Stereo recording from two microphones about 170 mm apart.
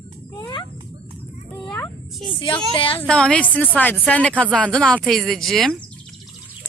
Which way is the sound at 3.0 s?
5° left (ahead or behind).